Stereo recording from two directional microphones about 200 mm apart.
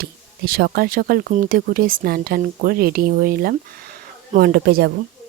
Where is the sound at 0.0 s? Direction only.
50° right (ahead or behind).